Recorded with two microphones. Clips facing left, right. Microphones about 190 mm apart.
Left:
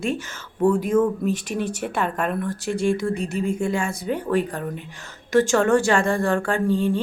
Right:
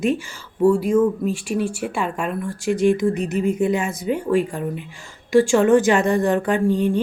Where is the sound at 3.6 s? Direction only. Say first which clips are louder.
Right 5 dB; 20° right (ahead or behind).